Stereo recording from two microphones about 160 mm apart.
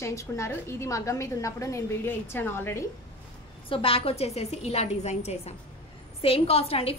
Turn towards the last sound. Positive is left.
turn(degrees=40)  # may be behind; listen again after turning